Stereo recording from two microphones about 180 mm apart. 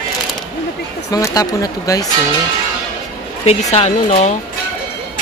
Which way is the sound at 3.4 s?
35° left (ahead or behind).